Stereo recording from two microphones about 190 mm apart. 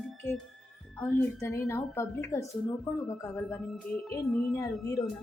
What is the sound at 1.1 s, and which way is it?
A woman's voice, 15° left (ahead or behind).